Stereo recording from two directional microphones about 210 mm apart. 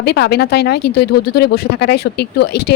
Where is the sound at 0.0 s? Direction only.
50° left (ahead or behind).